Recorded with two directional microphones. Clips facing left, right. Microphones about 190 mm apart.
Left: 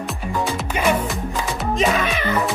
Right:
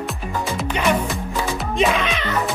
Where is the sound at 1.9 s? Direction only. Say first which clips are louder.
Left 1 dB; 50° left (ahead or behind).